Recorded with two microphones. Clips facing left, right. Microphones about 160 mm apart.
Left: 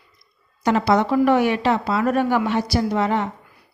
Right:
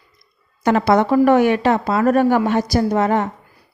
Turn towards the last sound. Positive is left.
turn(degrees=-45)  # may be behind; listen again after turning